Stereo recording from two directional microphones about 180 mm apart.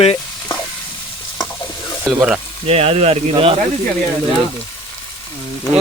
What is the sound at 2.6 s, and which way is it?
Speech, 35° right (ahead or behind).